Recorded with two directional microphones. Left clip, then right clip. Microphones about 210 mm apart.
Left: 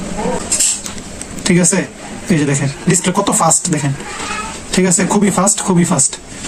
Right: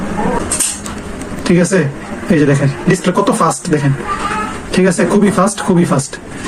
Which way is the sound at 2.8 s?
60° left (ahead or behind).